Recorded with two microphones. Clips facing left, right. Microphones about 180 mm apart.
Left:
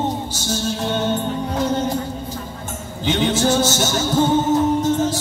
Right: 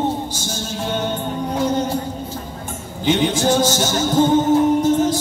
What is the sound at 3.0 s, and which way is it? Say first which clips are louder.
Music: right 1 dB; 15° right (ahead or behind).